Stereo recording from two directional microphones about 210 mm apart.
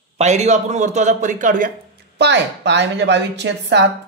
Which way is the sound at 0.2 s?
30° right (ahead or behind).